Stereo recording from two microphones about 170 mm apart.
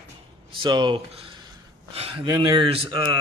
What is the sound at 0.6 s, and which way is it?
Speech, 25° right (ahead or behind).